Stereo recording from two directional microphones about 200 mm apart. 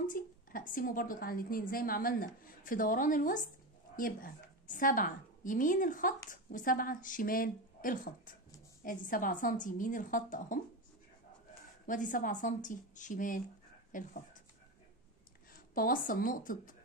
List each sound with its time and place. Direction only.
0.0 s a woman's voice: 45° left (ahead or behind)
11.8 s a woman's voice: 40° left (ahead or behind)
15.7 s a woman's voice: 45° left (ahead or behind)